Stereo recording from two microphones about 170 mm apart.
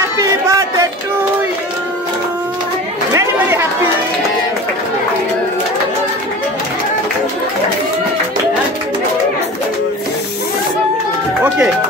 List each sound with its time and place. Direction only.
0.2 s a sound: 20° right (ahead or behind)
3.2 s chatter: 15° right (ahead or behind)
11.4 s music: 10° right (ahead or behind)